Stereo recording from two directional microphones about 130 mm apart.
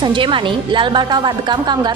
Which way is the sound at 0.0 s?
40° right (ahead or behind).